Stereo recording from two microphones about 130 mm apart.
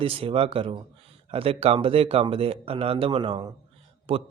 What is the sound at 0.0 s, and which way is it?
Speech, 45° right (ahead or behind).